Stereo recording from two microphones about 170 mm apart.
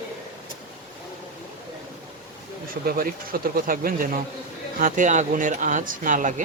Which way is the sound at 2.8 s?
60° right (ahead or behind).